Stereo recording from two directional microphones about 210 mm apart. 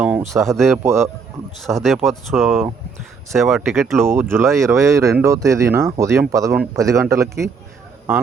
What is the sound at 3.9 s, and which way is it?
Speech, 10° right (ahead or behind).